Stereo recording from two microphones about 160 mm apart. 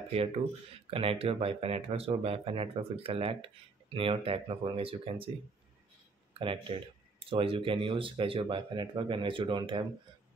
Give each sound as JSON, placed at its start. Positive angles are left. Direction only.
{"t": 0.1, "sound": "speech", "side_deg": -40}
{"t": 6.3, "sound": "speech", "side_deg": -35}